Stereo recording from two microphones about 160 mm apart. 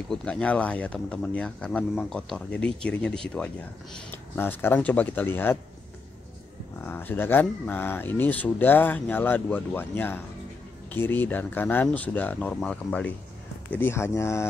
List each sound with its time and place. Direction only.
0.1 s speech: 5° left (ahead or behind)
6.8 s speech: 10° left (ahead or behind)